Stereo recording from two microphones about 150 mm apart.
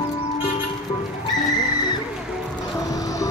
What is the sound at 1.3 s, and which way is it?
Music, 25° left (ahead or behind).